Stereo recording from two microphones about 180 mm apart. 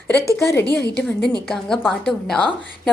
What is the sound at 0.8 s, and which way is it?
Speech, 65° left (ahead or behind).